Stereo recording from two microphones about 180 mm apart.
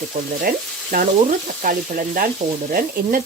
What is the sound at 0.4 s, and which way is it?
Speech, 55° right (ahead or behind).